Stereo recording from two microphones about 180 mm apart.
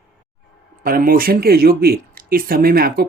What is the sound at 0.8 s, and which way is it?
Speech, 50° right (ahead or behind).